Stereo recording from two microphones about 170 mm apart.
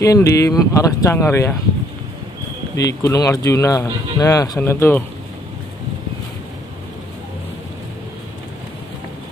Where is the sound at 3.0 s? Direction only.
20° left (ahead or behind).